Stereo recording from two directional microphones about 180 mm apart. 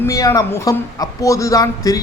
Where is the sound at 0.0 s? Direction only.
15° left (ahead or behind).